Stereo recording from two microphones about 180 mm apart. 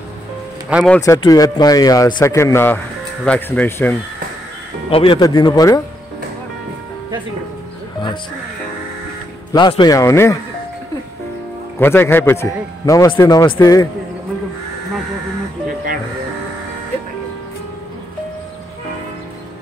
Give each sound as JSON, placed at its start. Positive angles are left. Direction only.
{"t": 0.7, "sound": "speech", "side_deg": -5}
{"t": 1.0, "sound": "a man's voice", "side_deg": 20}
{"t": 4.8, "sound": "speech", "side_deg": 30}
{"t": 9.5, "sound": "speech", "side_deg": 25}
{"t": 11.8, "sound": "a man's voice", "side_deg": 10}